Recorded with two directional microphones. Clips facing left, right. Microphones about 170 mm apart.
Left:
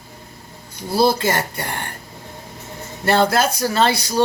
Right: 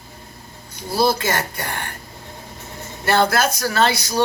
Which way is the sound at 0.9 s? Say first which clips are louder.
Left 2 dB; 30° left (ahead or behind).